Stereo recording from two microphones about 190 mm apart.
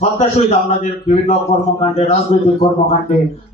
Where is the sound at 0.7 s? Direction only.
35° left (ahead or behind).